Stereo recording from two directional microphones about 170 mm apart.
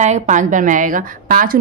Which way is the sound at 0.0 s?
45° right (ahead or behind).